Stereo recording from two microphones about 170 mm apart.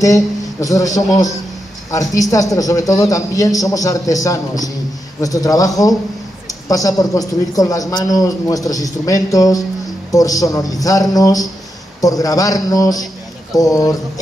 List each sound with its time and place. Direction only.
0.0 s a man's voice: 20° left (ahead or behind)